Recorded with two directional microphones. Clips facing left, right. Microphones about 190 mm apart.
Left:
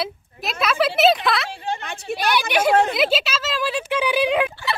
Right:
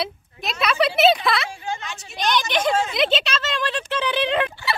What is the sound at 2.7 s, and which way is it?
Speech, 60° left (ahead or behind).